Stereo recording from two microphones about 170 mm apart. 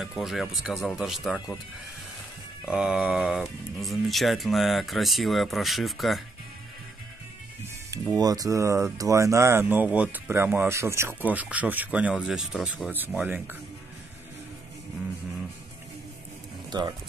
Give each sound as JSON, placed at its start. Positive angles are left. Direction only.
{"t": 0.0, "sound": "speech", "side_deg": 0}
{"t": 2.6, "sound": "speech", "side_deg": -5}
{"t": 7.9, "sound": "speech", "side_deg": -20}
{"t": 16.7, "sound": "speech", "side_deg": -25}